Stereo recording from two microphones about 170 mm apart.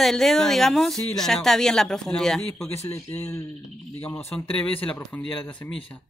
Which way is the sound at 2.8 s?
15° left (ahead or behind).